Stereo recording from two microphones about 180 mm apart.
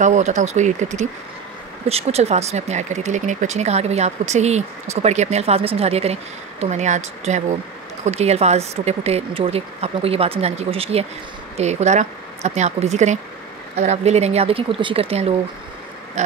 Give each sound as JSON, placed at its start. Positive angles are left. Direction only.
{"t": 0.0, "sound": "speech", "side_deg": -40}